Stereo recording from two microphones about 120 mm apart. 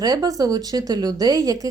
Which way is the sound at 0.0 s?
30° right (ahead or behind).